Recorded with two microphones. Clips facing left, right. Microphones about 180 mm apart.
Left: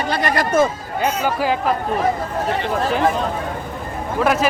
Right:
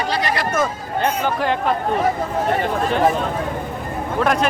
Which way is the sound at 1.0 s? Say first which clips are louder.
Even; 5° left (ahead or behind).